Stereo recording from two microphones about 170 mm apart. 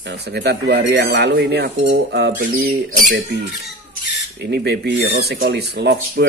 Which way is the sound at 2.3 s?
65° right (ahead or behind).